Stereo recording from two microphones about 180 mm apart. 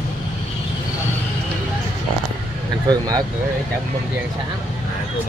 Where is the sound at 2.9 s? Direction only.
20° right (ahead or behind).